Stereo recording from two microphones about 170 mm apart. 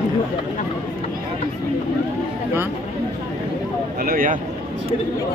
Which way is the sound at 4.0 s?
55° right (ahead or behind).